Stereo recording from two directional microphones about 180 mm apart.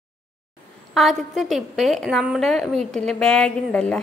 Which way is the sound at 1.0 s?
Centre (ahead or behind).